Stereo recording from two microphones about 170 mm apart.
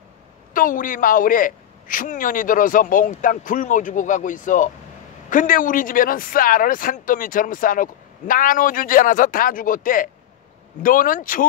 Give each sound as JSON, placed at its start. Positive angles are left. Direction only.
{"t": 0.5, "sound": "speech", "side_deg": 50}